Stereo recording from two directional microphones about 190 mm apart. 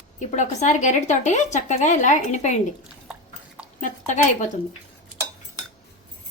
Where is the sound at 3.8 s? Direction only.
40° left (ahead or behind).